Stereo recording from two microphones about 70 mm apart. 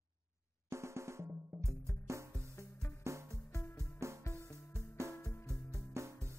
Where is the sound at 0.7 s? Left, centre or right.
Right.